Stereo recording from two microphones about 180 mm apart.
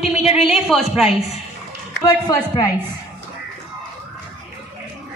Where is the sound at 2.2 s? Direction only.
20° left (ahead or behind).